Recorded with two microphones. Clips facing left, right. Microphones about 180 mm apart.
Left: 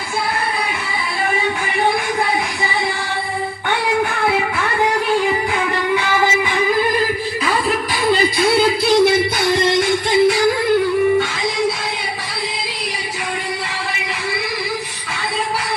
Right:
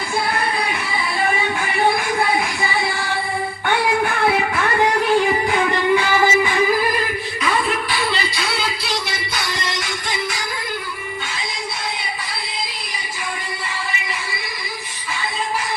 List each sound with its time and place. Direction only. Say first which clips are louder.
8.0 s music: left 8 dB; 45° left (ahead or behind)